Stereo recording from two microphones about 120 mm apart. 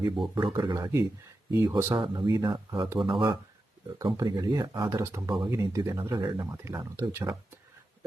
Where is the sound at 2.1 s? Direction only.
35° right (ahead or behind).